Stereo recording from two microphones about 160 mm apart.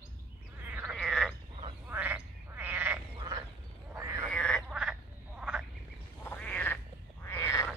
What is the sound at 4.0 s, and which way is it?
Frog, 20° right (ahead or behind).